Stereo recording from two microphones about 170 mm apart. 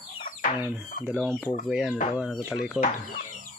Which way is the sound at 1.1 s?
Centre (ahead or behind).